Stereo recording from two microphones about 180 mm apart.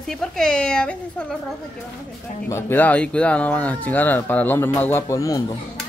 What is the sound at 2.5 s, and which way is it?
Speech, 15° left (ahead or behind).